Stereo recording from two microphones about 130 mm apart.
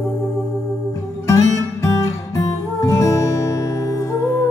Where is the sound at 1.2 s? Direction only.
20° left (ahead or behind).